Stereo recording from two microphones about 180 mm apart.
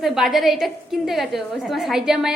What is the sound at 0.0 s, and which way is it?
A woman's voice, centre (ahead or behind).